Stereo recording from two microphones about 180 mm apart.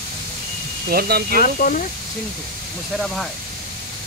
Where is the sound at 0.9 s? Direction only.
60° right (ahead or behind).